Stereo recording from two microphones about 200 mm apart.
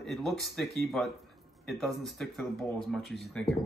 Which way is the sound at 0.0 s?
Centre (ahead or behind).